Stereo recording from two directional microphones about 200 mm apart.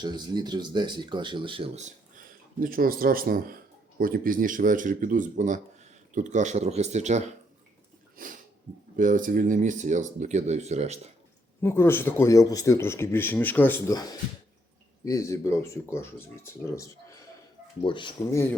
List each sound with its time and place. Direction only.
0.0 s speech: 20° right (ahead or behind)
2.1 s speech: 45° right (ahead or behind)
8.2 s a sound: 45° right (ahead or behind)
9.0 s speech: 40° right (ahead or behind)
11.6 s speech: 10° left (ahead or behind)